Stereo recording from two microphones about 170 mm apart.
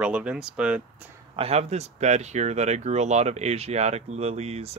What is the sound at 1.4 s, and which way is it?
Speech, 35° right (ahead or behind).